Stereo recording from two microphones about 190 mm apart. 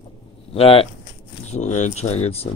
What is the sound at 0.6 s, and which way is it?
Speech, 30° left (ahead or behind).